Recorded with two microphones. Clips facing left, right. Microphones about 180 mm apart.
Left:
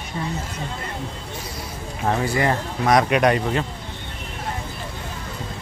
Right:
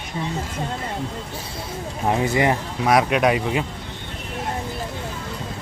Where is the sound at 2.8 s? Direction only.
5° right (ahead or behind).